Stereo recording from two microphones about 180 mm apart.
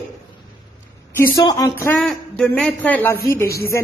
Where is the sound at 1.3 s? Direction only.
20° left (ahead or behind).